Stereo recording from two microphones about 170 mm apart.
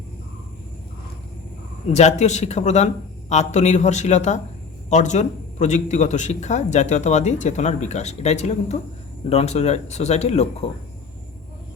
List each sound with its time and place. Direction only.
1.9 s a man's voice: 40° left (ahead or behind)